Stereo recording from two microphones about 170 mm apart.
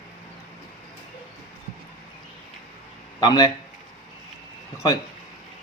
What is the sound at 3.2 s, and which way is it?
Speech, 25° left (ahead or behind).